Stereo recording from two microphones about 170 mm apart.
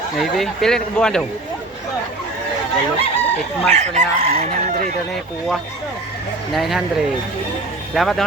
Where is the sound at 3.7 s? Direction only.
40° right (ahead or behind).